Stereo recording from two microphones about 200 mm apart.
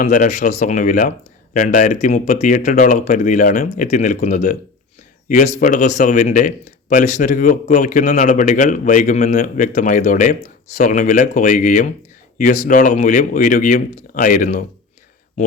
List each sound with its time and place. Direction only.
0.0 s a man's voice: 40° left (ahead or behind)
5.5 s a man's voice: 40° left (ahead or behind)